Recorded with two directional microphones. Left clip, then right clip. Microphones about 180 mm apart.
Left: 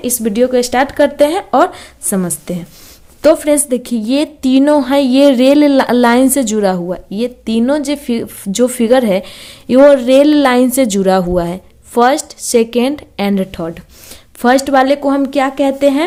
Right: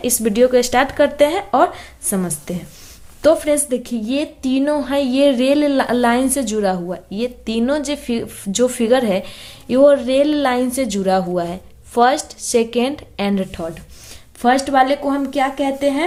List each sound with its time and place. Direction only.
0.0 s a woman's voice: 20° left (ahead or behind); by 16.0 s 60° left (ahead or behind)